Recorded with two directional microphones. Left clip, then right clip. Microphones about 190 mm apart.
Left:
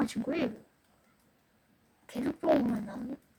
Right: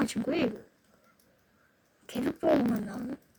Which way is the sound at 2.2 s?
Centre (ahead or behind).